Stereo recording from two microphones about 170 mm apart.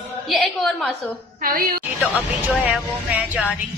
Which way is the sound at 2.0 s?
10° right (ahead or behind).